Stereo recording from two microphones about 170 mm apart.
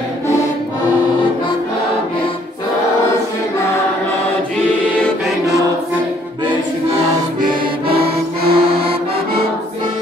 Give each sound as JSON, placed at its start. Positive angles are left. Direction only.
{"t": 7.9, "sound": "music", "side_deg": -65}
{"t": 8.7, "sound": "accordion", "side_deg": -35}